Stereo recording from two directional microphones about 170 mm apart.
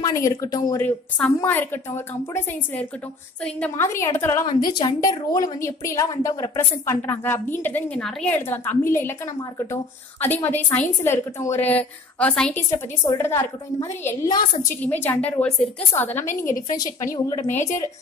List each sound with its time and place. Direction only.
0.0 s speech: 20° left (ahead or behind)
0.8 s a woman's voice: 10° left (ahead or behind)
10.2 s a woman's voice: 10° left (ahead or behind)
12.7 s speech: 25° left (ahead or behind)
13.2 s a woman's voice: 15° left (ahead or behind)